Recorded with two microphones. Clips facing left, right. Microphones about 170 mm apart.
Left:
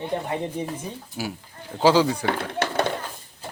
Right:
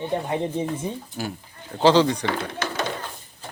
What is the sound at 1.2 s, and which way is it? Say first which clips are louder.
Speech: even; 10° left (ahead or behind).